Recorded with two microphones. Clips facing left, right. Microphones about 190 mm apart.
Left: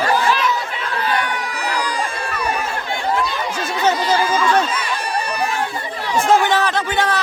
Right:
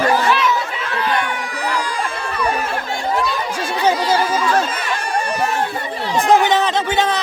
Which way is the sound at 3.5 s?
10° right (ahead or behind).